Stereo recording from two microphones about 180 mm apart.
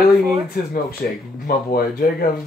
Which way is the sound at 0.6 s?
55° left (ahead or behind).